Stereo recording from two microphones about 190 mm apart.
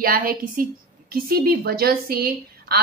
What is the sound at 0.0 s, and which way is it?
A woman's voice, 50° right (ahead or behind).